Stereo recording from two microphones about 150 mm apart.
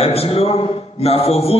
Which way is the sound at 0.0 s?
40° left (ahead or behind).